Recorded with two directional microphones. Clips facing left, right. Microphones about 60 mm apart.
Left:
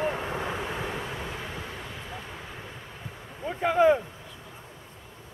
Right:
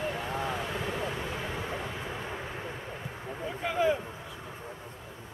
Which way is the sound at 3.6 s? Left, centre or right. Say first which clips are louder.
Left 7 dB; left.